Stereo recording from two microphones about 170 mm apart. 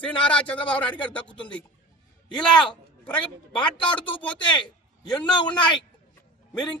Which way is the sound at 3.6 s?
30° left (ahead or behind).